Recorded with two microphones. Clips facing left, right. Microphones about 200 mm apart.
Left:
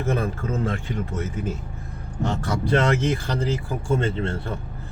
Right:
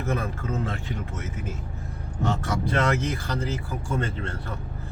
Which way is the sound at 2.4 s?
30° left (ahead or behind).